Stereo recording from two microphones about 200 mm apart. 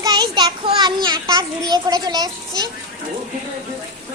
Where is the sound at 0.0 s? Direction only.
20° right (ahead or behind).